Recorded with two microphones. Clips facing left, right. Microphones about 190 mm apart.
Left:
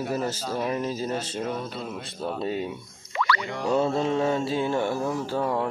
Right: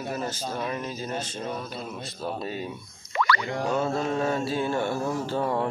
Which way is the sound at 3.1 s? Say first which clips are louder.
Right 1 dB; 45° right (ahead or behind).